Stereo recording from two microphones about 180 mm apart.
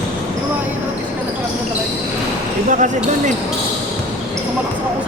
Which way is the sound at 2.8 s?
45° right (ahead or behind).